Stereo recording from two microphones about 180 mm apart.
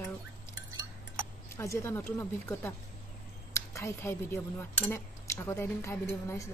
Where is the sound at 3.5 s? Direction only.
15° left (ahead or behind).